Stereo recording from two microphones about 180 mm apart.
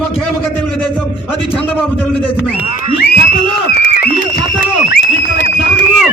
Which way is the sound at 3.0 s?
60° left (ahead or behind).